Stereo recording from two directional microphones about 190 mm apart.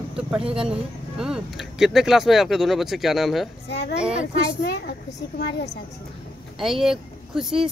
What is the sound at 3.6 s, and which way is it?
A child's voice, 60° left (ahead or behind).